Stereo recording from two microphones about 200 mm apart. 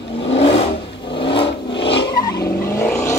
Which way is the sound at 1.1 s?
25° left (ahead or behind).